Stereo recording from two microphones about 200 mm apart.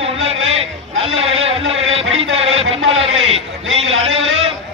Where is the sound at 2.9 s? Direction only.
30° right (ahead or behind).